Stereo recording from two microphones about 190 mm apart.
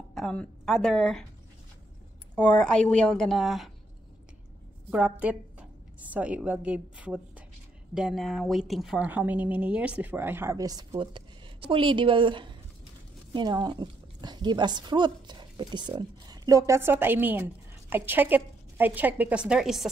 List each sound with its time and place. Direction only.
0.1 s a woman's voice: 5° left (ahead or behind)
2.3 s a woman's voice: 5° left (ahead or behind)
5.2 s a woman's voice: 5° right (ahead or behind)